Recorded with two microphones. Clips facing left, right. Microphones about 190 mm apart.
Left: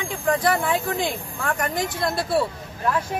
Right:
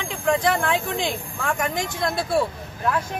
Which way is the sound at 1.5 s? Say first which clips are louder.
Even; 10° right (ahead or behind).